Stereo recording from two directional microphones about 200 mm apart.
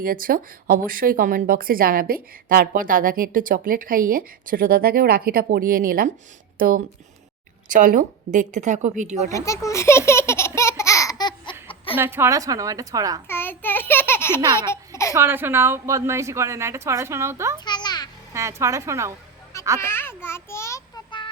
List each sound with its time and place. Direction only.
0.0 s a woman's voice: 45° right (ahead or behind)
9.3 s a child's voice: 15° left (ahead or behind)
10.1 s laughter: 15° left (ahead or behind)
11.9 s a woman's voice: 10° right (ahead or behind)
13.2 s a sound: 10° left (ahead or behind)
14.7 s babbling: 15° left (ahead or behind)
15.1 s a woman's voice: 10° right (ahead or behind)
17.7 s a sound: 20° left (ahead or behind)
18.3 s a woman's voice: 15° right (ahead or behind)
19.8 s a sound: 10° left (ahead or behind)